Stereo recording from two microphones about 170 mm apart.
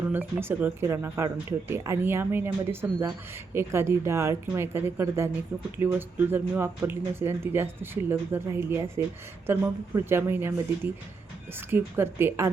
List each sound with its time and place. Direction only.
0.1 s speech: 10° right (ahead or behind)